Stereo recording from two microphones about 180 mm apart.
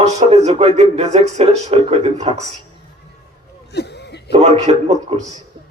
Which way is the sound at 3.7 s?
65° left (ahead or behind).